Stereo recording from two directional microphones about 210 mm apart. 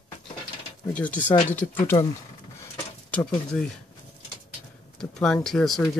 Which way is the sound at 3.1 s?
5° left (ahead or behind).